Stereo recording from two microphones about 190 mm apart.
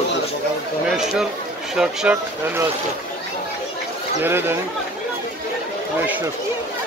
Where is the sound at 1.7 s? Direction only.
5° right (ahead or behind).